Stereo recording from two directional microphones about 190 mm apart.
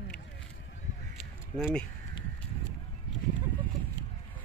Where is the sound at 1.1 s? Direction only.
Centre (ahead or behind).